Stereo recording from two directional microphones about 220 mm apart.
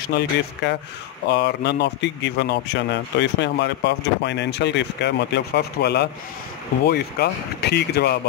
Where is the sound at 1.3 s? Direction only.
50° left (ahead or behind).